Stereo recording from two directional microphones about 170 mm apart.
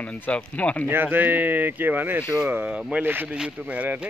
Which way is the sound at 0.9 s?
10° right (ahead or behind).